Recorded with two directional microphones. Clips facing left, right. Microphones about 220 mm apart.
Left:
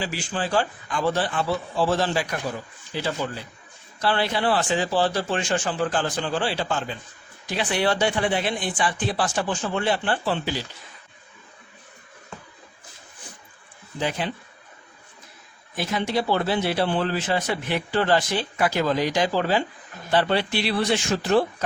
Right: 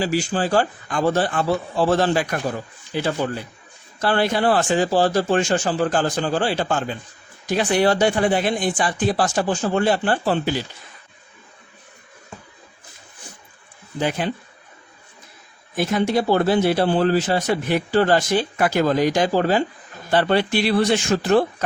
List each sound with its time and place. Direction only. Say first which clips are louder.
0.0 s speech: right 7 dB; 40° right (ahead or behind)
4.0 s speech: right 4 dB; 45° right (ahead or behind)
14.2 s speech: right 5 dB; 50° right (ahead or behind)
15.7 s speech: right 5 dB; 50° right (ahead or behind)